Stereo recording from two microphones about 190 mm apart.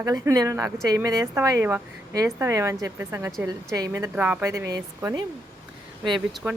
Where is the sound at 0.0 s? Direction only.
20° right (ahead or behind).